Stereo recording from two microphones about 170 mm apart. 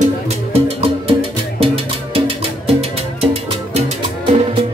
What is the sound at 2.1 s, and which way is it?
Music, 30° right (ahead or behind).